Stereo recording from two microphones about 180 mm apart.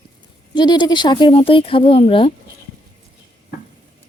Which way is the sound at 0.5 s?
25° left (ahead or behind).